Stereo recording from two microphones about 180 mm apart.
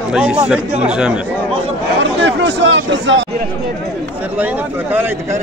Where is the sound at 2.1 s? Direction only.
85° right.